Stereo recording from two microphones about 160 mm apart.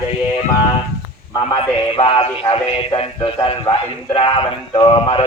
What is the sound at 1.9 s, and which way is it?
Speech, 35° left (ahead or behind).